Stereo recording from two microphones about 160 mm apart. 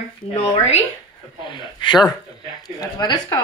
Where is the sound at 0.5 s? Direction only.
45° left (ahead or behind).